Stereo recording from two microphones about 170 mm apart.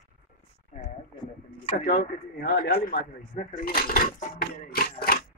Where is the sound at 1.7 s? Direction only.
55° left (ahead or behind).